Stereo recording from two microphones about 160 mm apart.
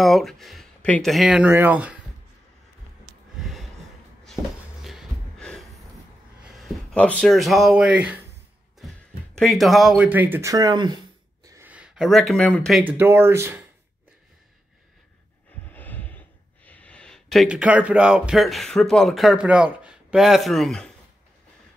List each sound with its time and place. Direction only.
0.0 s speech: centre (ahead or behind)
3.3 s a sound: centre (ahead or behind)
4.8 s gasp: centre (ahead or behind)
6.9 s speech: 5° left (ahead or behind); by 11.0 s 25° right (ahead or behind)
11.4 s a sound: 20° right (ahead or behind)
11.7 s speech: 5° right (ahead or behind)
12.8 s speech: 15° right (ahead or behind)
15.7 s speech: 10° left (ahead or behind)